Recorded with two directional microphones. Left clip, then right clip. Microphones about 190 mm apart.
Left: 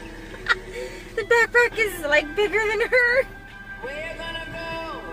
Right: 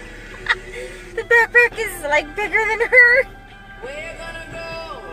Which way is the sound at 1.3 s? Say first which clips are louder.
Right 5 dB; 5° left (ahead or behind).